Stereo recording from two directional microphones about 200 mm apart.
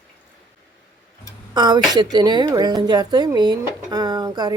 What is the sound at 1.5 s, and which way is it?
Speech, 20° right (ahead or behind).